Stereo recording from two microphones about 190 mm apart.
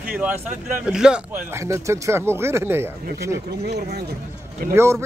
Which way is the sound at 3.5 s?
60° right (ahead or behind).